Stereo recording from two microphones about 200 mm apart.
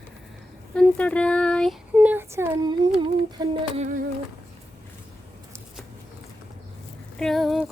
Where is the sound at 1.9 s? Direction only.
10° right (ahead or behind).